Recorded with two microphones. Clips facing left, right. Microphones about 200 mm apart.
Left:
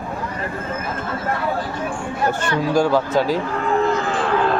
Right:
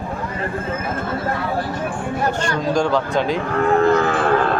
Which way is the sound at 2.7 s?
5° left (ahead or behind).